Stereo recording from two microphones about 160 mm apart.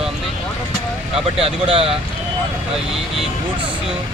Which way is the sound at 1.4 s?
35° right (ahead or behind).